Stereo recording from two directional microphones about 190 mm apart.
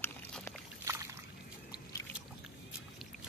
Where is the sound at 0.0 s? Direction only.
10° left (ahead or behind).